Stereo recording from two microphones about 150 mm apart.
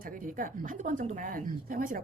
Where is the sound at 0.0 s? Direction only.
65° right (ahead or behind).